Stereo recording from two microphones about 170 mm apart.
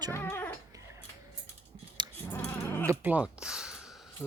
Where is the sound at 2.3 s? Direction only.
10° left (ahead or behind).